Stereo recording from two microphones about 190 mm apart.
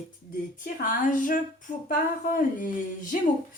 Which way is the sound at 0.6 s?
45° left (ahead or behind).